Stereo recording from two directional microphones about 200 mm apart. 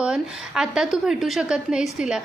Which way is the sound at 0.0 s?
5° right (ahead or behind).